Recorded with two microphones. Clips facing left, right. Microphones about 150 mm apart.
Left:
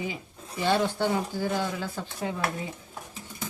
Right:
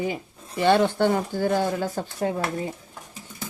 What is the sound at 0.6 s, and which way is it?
Speech, 60° right (ahead or behind).